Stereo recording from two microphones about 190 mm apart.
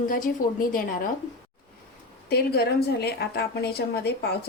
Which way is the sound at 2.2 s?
55° left (ahead or behind).